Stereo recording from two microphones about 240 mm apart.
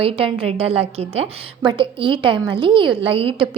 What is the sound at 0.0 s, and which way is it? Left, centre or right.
A woman's voice, right.